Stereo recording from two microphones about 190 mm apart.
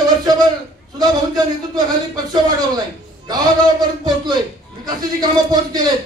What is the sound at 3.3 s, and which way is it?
A man's voice, 20° right (ahead or behind).